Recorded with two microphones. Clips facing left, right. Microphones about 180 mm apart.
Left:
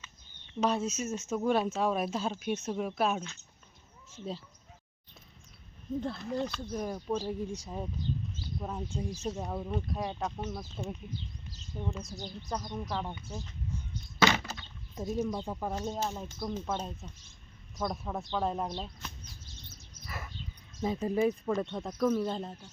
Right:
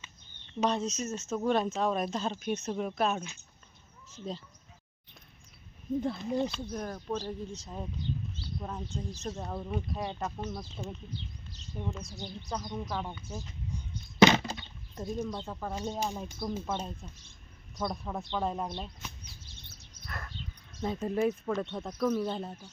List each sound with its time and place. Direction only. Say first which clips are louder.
0.6 s speech: even; 5° left (ahead or behind)
6.0 s speech: right 3 dB; 15° right (ahead or behind)
6.7 s speech: left 2 dB; 5° left (ahead or behind)
13.7 s a sound: left 1 dB; 15° right (ahead or behind)
14.9 s speech: left 2 dB; 5° left (ahead or behind)
16.0 s speech: right 1 dB; 15° right (ahead or behind)
19.2 s a sound: left 2 dB; 65° right (ahead or behind)
20.1 s a sound: even; 5° left (ahead or behind)
20.8 s speech: left 1 dB; centre (ahead or behind)